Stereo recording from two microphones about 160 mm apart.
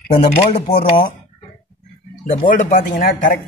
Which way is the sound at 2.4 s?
55° left (ahead or behind).